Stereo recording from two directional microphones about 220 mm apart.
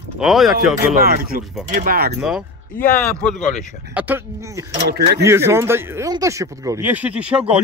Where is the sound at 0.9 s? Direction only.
40° right (ahead or behind).